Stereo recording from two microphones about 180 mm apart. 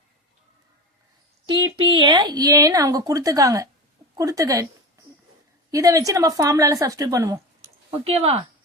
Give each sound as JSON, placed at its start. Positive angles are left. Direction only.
{"t": 1.9, "sound": "speech", "side_deg": -25}
{"t": 5.7, "sound": "speech", "side_deg": -20}
{"t": 7.9, "sound": "speech", "side_deg": -30}